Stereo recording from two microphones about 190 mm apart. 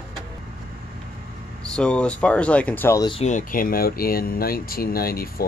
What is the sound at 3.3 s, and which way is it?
Speech, 45° left (ahead or behind).